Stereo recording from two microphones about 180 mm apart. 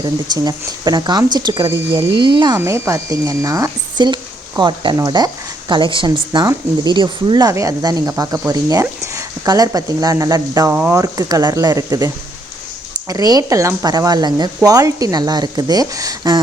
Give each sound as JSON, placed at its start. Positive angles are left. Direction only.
{"t": 0.0, "sound": "speech", "side_deg": -20}
{"t": 2.6, "sound": "speech", "side_deg": -15}